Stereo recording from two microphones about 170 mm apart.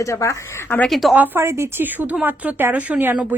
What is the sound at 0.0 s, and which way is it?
Speech, 20° left (ahead or behind).